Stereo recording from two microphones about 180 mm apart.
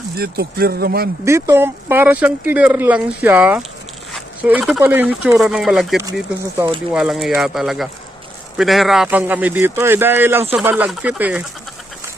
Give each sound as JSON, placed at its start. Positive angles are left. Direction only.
{"t": 0.2, "sound": "speech", "side_deg": -60}
{"t": 1.2, "sound": "speech", "side_deg": -15}